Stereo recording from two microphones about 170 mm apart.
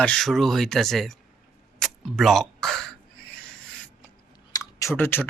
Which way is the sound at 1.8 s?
Centre (ahead or behind).